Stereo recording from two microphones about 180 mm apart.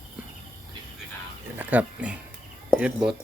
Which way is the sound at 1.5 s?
10° right (ahead or behind).